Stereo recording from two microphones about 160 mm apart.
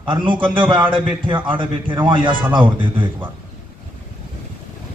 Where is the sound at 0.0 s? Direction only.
30° right (ahead or behind).